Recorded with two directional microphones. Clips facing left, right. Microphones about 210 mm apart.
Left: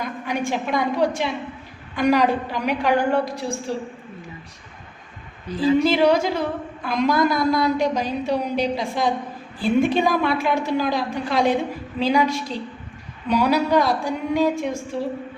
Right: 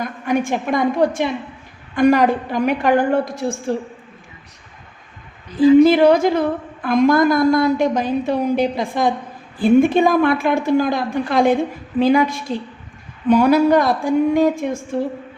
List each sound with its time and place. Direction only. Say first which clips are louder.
0.3 s speech: right 6 dB; 50° right (ahead or behind)
5.8 s speech: right 6 dB; 55° right (ahead or behind)